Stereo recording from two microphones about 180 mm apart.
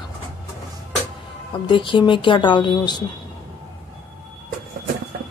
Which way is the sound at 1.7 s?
25° left (ahead or behind).